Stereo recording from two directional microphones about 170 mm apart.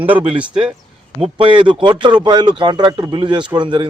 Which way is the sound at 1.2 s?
30° right (ahead or behind).